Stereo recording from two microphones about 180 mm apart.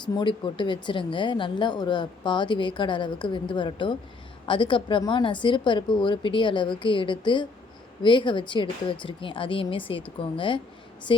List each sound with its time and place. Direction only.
0.0 s speech: 25° left (ahead or behind)